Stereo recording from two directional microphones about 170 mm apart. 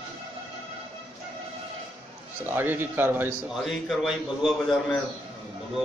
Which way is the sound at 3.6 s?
Centre (ahead or behind).